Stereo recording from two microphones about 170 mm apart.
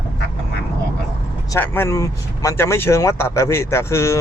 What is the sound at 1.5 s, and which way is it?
Speech, 15° left (ahead or behind).